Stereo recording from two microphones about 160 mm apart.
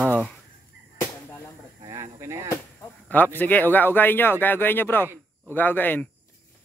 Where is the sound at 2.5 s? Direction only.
15° left (ahead or behind).